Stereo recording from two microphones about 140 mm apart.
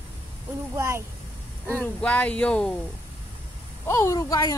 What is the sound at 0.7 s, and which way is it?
Speech, 20° right (ahead or behind).